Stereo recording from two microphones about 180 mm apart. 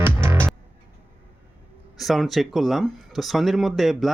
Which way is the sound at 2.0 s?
Centre (ahead or behind).